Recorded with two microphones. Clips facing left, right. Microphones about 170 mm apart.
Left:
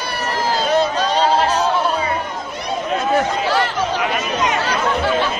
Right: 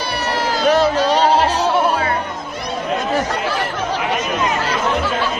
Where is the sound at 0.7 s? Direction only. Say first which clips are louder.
Right 5 dB; 90° right.